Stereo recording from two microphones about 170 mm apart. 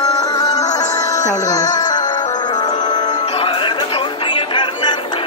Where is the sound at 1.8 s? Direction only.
25° left (ahead or behind).